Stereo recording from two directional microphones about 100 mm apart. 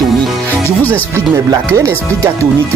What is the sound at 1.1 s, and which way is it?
Speech, 30° right (ahead or behind).